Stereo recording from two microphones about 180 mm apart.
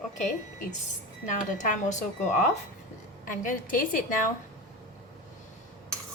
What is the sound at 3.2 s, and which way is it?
Speech, 50° left (ahead or behind).